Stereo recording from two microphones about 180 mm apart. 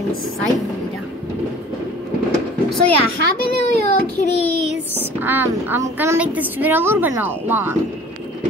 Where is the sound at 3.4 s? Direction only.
60° right (ahead or behind).